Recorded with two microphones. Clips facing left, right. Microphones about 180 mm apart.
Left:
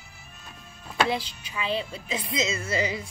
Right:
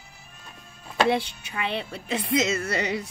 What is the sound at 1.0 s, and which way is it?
A woman's voice, 60° right (ahead or behind).